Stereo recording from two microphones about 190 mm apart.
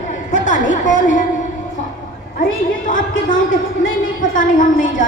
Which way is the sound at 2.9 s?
45° left (ahead or behind).